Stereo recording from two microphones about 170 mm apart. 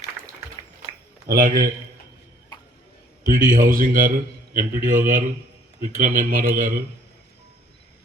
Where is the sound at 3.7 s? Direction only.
55° right (ahead or behind).